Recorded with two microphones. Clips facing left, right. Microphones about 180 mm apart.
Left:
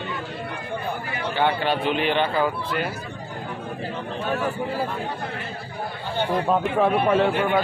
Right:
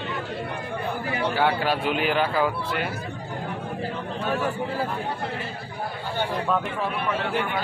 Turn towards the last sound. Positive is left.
turn(degrees=55)  # may be behind; listen again after turning